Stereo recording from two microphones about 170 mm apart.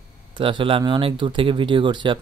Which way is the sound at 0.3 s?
30° right (ahead or behind).